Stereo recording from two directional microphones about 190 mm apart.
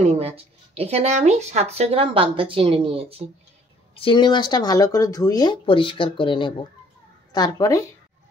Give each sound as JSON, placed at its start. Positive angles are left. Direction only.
{"t": 0.0, "sound": "speech", "side_deg": -35}
{"t": 3.9, "sound": "speech", "side_deg": 25}